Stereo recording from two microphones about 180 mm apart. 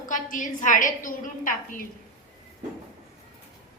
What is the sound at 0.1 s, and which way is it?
A woman's voice, 45° left (ahead or behind).